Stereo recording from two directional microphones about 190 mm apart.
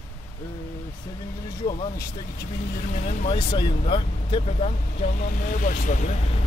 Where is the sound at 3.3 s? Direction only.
25° left (ahead or behind); by 6.1 s 45° left (ahead or behind).